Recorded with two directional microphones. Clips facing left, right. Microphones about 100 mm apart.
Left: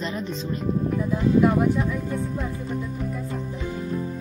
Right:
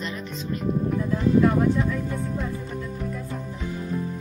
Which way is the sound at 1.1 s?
10° left (ahead or behind).